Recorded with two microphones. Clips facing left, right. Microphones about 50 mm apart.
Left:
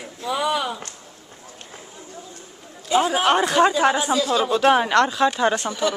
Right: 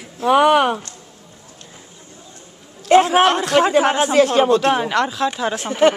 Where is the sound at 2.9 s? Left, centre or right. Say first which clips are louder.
Right 7 dB; right.